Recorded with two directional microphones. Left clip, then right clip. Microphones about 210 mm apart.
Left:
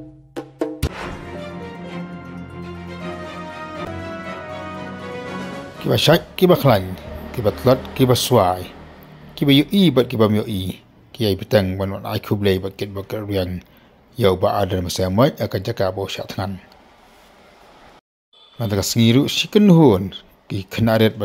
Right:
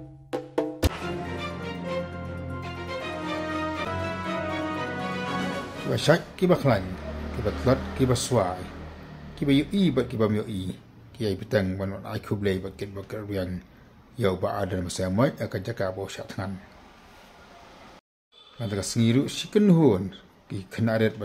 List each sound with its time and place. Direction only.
1.0 s music: centre (ahead or behind)
5.9 s speech: 30° left (ahead or behind)
18.6 s speech: 30° left (ahead or behind)